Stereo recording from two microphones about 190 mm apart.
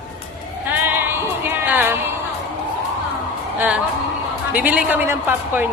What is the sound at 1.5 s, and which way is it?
Speech, 10° right (ahead or behind).